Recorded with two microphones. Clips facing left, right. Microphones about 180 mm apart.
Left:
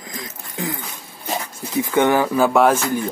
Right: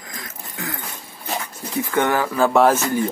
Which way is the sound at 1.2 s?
15° left (ahead or behind).